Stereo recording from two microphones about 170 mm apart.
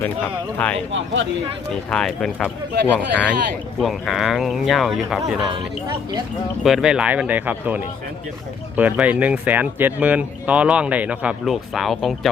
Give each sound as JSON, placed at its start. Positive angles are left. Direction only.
{"t": 0.9, "sound": "speech", "side_deg": -90}
{"t": 1.9, "sound": "speech", "side_deg": 5}
{"t": 6.7, "sound": "speech", "side_deg": -5}